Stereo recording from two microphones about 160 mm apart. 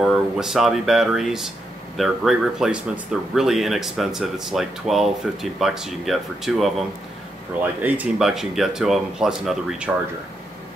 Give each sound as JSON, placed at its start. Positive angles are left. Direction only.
{"t": 0.0, "sound": "speech", "side_deg": -5}
{"t": 7.8, "sound": "speech", "side_deg": -5}